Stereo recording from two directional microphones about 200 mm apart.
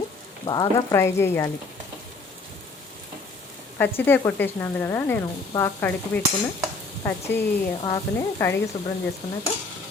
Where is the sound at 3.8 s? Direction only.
10° left (ahead or behind).